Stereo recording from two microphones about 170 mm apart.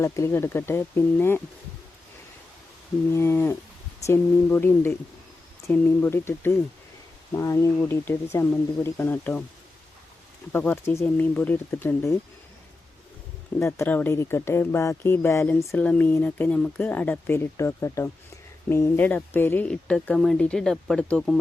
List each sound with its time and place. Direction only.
0.0 s speech: 15° left (ahead or behind)
3.1 s speech: 15° left (ahead or behind)
10.5 s speech: 10° left (ahead or behind)
13.6 s speech: 15° left (ahead or behind)